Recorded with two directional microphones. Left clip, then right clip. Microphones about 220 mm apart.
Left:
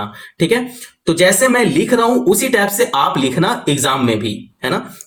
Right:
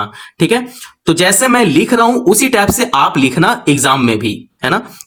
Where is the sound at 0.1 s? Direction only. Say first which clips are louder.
Right 2 dB; 30° right (ahead or behind).